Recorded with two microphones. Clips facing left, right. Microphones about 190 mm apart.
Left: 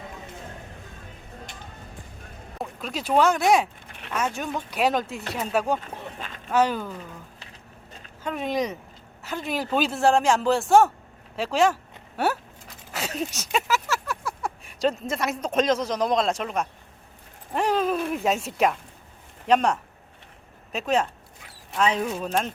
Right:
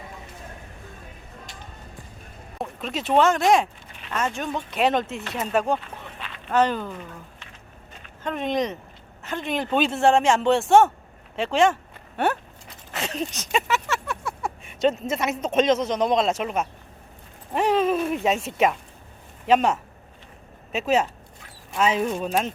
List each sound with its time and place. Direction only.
2.6 s speech: centre (ahead or behind)
5.8 s a sound: 40° left (ahead or behind)
6.5 s speech: 5° left (ahead or behind)
8.2 s speech: 5° left (ahead or behind)
17.5 s a sound: centre (ahead or behind)
19.5 s speech: 5° right (ahead or behind)